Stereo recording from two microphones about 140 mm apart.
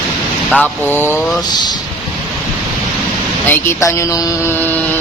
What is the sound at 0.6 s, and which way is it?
Speech, 15° left (ahead or behind).